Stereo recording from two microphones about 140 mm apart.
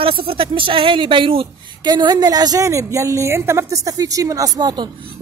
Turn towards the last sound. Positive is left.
turn(degrees=-30)  # may be behind; listen again after turning